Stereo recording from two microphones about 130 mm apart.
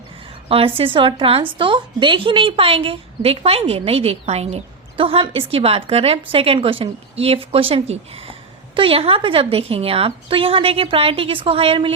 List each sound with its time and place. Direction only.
0.4 s a woman's voice: 45° right (ahead or behind)